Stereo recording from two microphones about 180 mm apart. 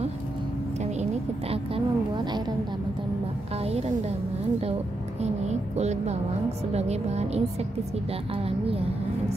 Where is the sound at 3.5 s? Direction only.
35° right (ahead or behind).